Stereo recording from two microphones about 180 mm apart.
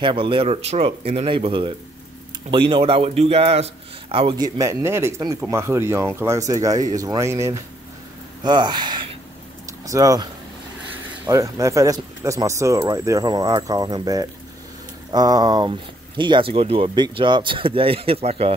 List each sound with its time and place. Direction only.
0.0 s a man's voice: 30° right (ahead or behind)
9.7 s a sound: 20° right (ahead or behind)
10.9 s a man's voice: 15° right (ahead or behind); by 18.5 s 35° right (ahead or behind)